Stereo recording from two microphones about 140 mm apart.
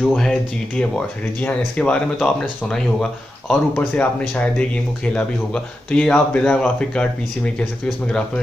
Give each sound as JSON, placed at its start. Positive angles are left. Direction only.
{"t": 0.0, "sound": "speech", "side_deg": 5}